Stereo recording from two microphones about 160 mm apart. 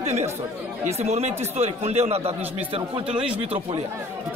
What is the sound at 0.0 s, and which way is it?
A man's voice, 40° right (ahead or behind).